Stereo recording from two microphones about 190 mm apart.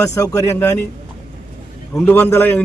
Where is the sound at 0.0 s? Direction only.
15° left (ahead or behind).